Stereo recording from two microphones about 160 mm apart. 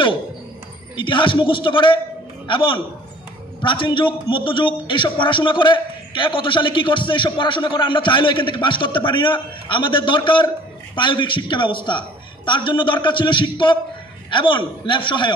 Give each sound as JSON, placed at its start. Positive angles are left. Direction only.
{"t": 0.9, "sound": "a man's voice", "side_deg": 30}